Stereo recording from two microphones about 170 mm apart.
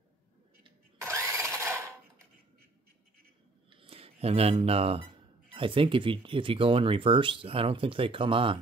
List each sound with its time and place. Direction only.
1.0 s engine starting: 15° right (ahead or behind)
3.7 s speech: 35° right (ahead or behind)